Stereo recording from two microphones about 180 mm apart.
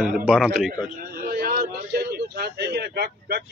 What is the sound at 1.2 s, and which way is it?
A man's voice, 55° right (ahead or behind).